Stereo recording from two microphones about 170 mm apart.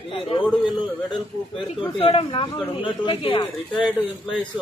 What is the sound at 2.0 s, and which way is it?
Speech, 35° left (ahead or behind).